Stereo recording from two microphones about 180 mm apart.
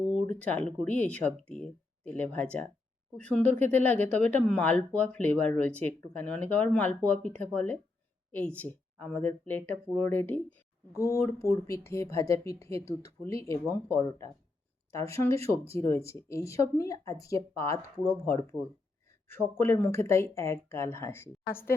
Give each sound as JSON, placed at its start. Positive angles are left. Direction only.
{"t": 0.0, "sound": "speech", "side_deg": 5}
{"t": 12.8, "sound": "speech", "side_deg": -35}
{"t": 13.2, "sound": "speech", "side_deg": 15}